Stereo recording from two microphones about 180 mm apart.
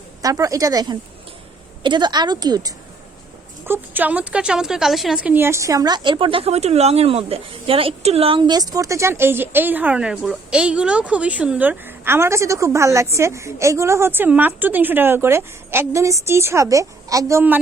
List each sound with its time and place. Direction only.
0.2 s speech: 20° right (ahead or behind)
3.7 s a woman's voice: 10° right (ahead or behind)